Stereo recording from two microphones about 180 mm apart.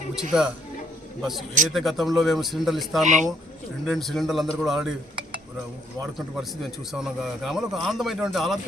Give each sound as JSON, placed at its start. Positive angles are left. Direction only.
{"t": 0.3, "sound": "a man's voice", "side_deg": -5}
{"t": 3.0, "sound": "speech", "side_deg": -45}
{"t": 3.8, "sound": "a man's voice", "side_deg": 0}
{"t": 6.1, "sound": "a man's voice", "side_deg": 0}